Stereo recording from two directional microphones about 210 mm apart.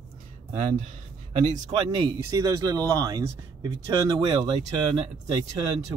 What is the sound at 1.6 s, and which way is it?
Speech, 20° right (ahead or behind).